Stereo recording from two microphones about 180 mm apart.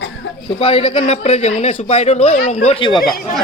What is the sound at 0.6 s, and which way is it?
Speech, 30° left (ahead or behind).